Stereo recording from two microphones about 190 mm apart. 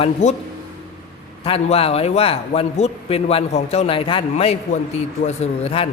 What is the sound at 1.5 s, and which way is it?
A man's voice, 30° left (ahead or behind).